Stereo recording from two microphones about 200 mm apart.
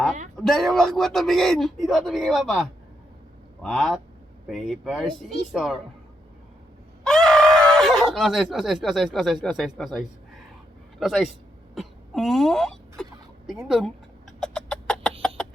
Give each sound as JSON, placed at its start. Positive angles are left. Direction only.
{"t": 0.3, "sound": "speech", "side_deg": 0}
{"t": 7.0, "sound": "speech", "side_deg": 0}
{"t": 13.5, "sound": "chicken", "side_deg": 0}
{"t": 15.4, "sound": "a sound", "side_deg": 5}